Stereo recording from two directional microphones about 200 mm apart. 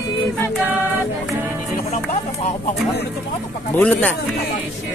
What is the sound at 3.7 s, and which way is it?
Speech, 10° left (ahead or behind).